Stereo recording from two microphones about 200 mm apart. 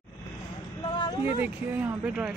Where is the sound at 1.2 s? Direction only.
10° right (ahead or behind).